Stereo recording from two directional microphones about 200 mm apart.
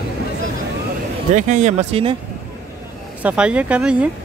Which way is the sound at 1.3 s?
35° right (ahead or behind).